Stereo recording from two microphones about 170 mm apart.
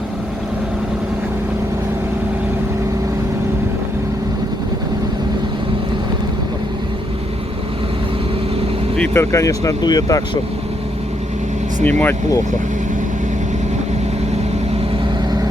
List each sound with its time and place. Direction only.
9.0 s speech: 15° left (ahead or behind)
11.8 s speech: 10° left (ahead or behind)